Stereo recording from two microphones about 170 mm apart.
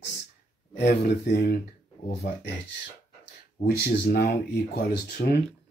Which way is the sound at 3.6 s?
65° left (ahead or behind).